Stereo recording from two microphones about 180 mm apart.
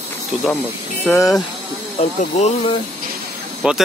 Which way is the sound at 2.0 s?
40° left (ahead or behind).